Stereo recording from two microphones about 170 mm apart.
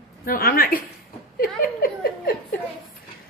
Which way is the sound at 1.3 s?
60° left (ahead or behind).